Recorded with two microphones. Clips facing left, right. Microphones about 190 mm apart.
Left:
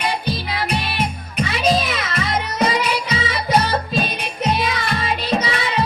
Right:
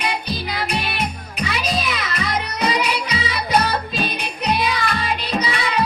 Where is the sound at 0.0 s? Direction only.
25° left (ahead or behind).